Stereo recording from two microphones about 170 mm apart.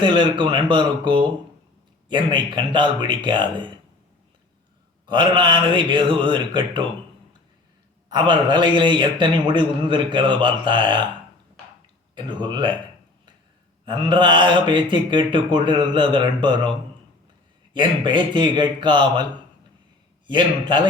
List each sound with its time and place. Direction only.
0.0 s speech: 30° right (ahead or behind)
5.0 s speech: 30° right (ahead or behind)
8.3 s speech: 30° right (ahead or behind)
12.1 s speech: 25° right (ahead or behind)
13.8 s speech: 30° right (ahead or behind)
17.7 s speech: 30° right (ahead or behind)
20.2 s speech: 30° right (ahead or behind)